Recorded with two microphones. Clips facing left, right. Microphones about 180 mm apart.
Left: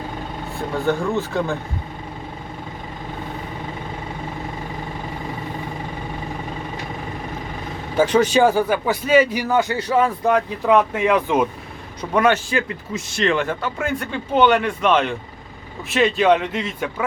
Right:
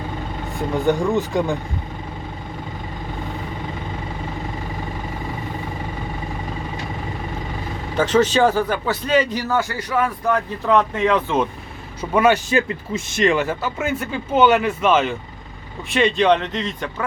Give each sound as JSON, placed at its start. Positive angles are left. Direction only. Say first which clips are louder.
{"t": 0.7, "sound": "speech", "louder": "right 2 dB", "side_deg": -15}
{"t": 7.9, "sound": "a man's voice", "louder": "left 1 dB", "side_deg": 10}
{"t": 10.7, "sound": "a man's voice", "louder": "left 1 dB", "side_deg": 10}
{"t": 12.1, "sound": "speech", "louder": "right 1 dB", "side_deg": -5}
{"t": 12.5, "sound": "speech", "louder": "right 3 dB", "side_deg": -25}
{"t": 13.2, "sound": "a man's voice", "louder": "right 2 dB", "side_deg": -5}